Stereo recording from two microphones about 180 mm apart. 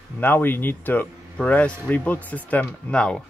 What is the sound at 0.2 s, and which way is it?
Speech, 10° left (ahead or behind).